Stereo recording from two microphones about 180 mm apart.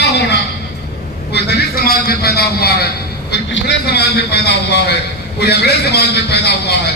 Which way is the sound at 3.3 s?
75° left (ahead or behind).